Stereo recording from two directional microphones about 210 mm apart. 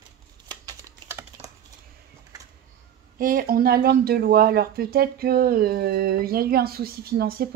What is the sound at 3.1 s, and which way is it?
Speech, 45° right (ahead or behind).